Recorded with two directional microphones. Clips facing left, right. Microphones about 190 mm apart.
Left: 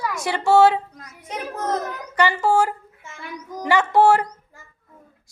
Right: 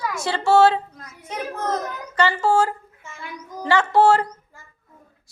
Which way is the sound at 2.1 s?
15° left (ahead or behind).